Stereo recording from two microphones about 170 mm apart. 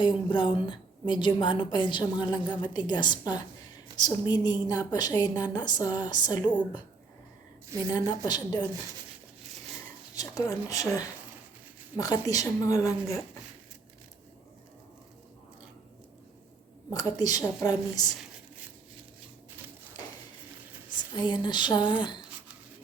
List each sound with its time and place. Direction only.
0.3 s a woman's voice: 30° left (ahead or behind)
7.9 s a woman's voice: 25° left (ahead or behind)
10.2 s a woman's voice: 20° left (ahead or behind)
16.9 s a woman's voice: 20° left (ahead or behind)
20.9 s a woman's voice: 25° left (ahead or behind)